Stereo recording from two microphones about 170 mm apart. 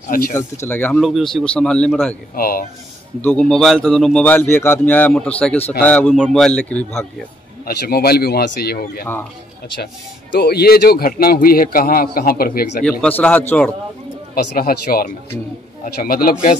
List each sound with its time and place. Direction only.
0.3 s speech: 15° left (ahead or behind)
2.3 s a man's voice: 60° left (ahead or behind)
3.2 s speech: 5° left (ahead or behind)
7.6 s speech: 65° left (ahead or behind)
10.3 s a man's voice: 70° left (ahead or behind)
13.0 s speech: 10° left (ahead or behind)
14.3 s a man's voice: 65° left (ahead or behind)